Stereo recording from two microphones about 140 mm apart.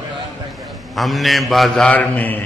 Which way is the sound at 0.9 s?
Centre (ahead or behind).